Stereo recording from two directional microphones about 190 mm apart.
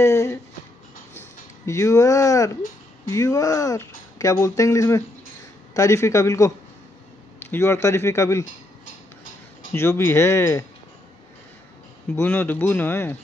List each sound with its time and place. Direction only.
0.0 s a sound: 15° left (ahead or behind)
1.7 s speech: 15° left (ahead or behind)
9.7 s speech: 15° left (ahead or behind)
12.2 s speech: 10° left (ahead or behind)